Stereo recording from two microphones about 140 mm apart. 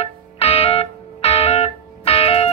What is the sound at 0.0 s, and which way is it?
Music, 45° left (ahead or behind).